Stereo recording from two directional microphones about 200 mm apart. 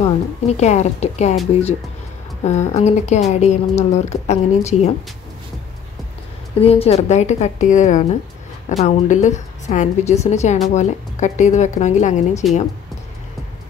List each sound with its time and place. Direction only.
0.0 s a woman's voice: 35° left (ahead or behind)
2.4 s a woman's voice: 35° left (ahead or behind)
6.6 s a woman's voice: 30° left (ahead or behind)